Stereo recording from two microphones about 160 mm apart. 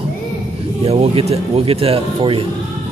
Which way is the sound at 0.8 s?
40° right (ahead or behind).